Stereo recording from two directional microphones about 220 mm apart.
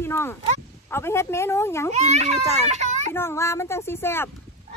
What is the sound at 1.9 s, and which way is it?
Speech, 30° right (ahead or behind).